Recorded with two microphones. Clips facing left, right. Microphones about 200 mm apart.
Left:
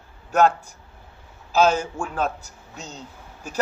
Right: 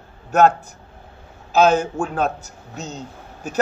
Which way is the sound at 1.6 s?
55° right (ahead or behind).